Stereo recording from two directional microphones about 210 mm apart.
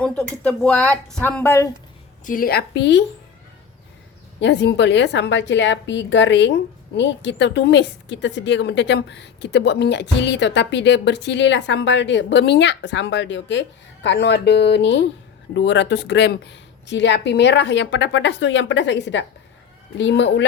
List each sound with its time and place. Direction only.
0.0 s a woman's voice: 5° left (ahead or behind)
2.2 s a woman's voice: 40° left (ahead or behind)
4.4 s a woman's voice: 55° left (ahead or behind)